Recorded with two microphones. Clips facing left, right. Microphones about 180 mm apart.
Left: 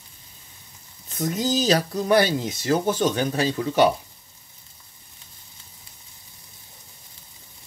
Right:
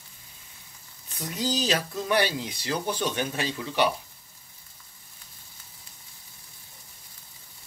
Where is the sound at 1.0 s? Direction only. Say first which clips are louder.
Left 6 dB; 40° left (ahead or behind).